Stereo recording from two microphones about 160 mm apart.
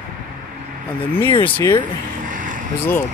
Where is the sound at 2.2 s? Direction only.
55° right (ahead or behind).